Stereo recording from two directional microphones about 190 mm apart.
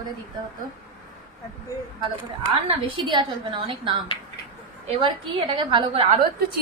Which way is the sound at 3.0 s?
25° right (ahead or behind).